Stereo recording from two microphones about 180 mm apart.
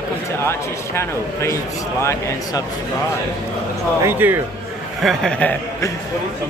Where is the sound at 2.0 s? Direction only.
15° left (ahead or behind).